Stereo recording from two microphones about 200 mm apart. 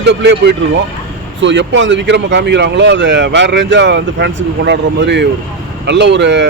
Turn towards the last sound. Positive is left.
turn(degrees=-60)  # may be behind; listen again after turning